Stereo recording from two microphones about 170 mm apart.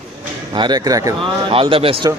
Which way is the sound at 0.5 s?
25° right (ahead or behind).